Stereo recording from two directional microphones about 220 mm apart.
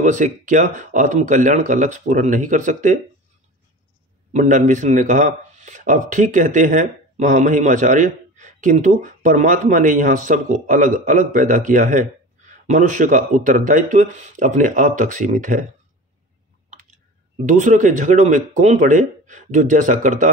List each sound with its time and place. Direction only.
0.0 s speech: 35° right (ahead or behind)
4.3 s speech: 35° right (ahead or behind)
17.5 s speech: 35° right (ahead or behind)